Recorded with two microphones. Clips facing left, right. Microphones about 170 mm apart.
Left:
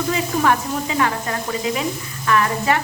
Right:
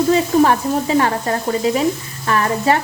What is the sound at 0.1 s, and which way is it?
Speech, 35° right (ahead or behind).